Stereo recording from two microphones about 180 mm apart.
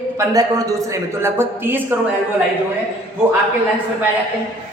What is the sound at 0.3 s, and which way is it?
A man's voice, 20° right (ahead or behind).